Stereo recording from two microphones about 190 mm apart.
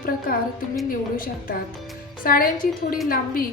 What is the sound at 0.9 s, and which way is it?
A woman's voice, 50° left (ahead or behind).